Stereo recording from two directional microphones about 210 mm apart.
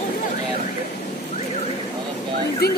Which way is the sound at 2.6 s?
50° left (ahead or behind).